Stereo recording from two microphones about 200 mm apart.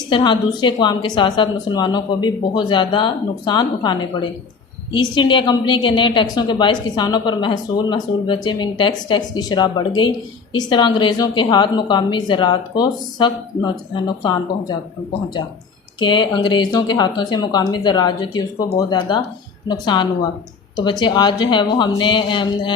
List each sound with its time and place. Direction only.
0.1 s a woman's voice: 20° left (ahead or behind)
16.0 s a woman's voice: 25° left (ahead or behind)